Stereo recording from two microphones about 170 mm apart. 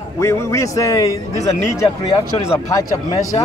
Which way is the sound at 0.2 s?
15° left (ahead or behind).